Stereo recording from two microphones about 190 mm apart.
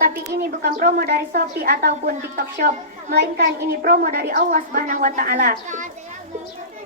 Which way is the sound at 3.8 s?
55° right (ahead or behind).